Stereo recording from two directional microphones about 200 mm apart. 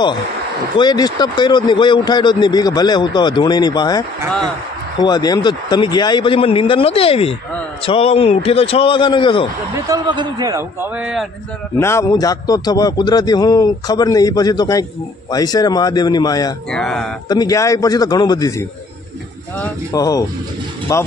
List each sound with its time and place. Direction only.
0.7 s speech: 20° left (ahead or behind)
9.8 s a man's voice: 20° right (ahead or behind); by 11.2 s 5° right (ahead or behind)
11.8 s speech: 15° left (ahead or behind)
16.7 s speech: centre (ahead or behind)
17.3 s a man's voice: 20° left (ahead or behind)
19.9 s a man's voice: 20° left (ahead or behind)